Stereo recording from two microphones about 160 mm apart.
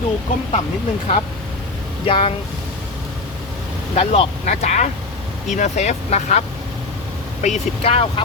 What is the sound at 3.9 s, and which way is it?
Speech, 40° left (ahead or behind).